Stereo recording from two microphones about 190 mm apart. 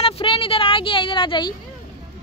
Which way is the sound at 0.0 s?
30° left (ahead or behind).